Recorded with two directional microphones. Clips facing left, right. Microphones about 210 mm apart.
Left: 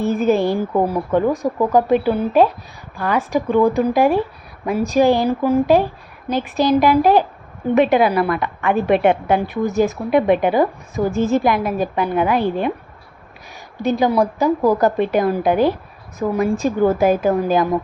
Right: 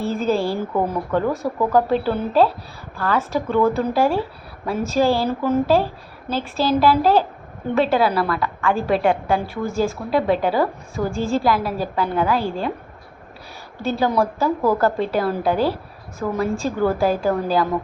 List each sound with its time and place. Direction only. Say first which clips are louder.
0.0 s a woman's voice: left 4 dB; 20° left (ahead or behind)
13.8 s a woman's voice: left 3 dB; 15° left (ahead or behind)